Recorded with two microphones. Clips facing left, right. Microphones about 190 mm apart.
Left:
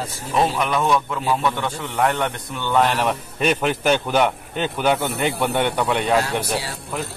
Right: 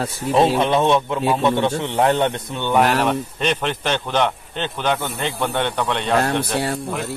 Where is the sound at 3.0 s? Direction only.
5° left (ahead or behind).